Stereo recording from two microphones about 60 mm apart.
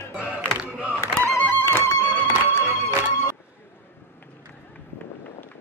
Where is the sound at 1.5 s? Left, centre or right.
Left.